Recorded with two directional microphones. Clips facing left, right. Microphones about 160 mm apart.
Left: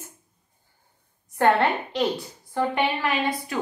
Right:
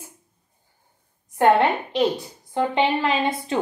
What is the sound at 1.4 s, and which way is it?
A woman's voice, 15° right (ahead or behind).